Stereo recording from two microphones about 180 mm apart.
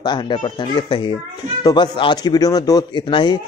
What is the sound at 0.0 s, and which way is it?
A man's voice, 25° left (ahead or behind).